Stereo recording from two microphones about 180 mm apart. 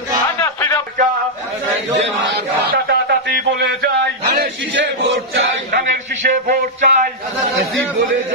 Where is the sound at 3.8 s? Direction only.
60° right (ahead or behind).